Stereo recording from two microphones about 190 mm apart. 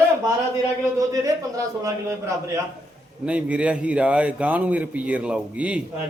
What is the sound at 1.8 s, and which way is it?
A man's voice, 15° right (ahead or behind).